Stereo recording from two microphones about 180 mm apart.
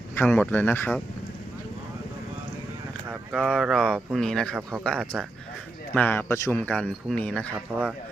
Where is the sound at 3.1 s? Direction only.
5° right (ahead or behind).